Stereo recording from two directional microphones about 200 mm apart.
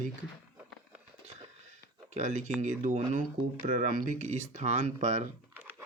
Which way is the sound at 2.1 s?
35° right (ahead or behind).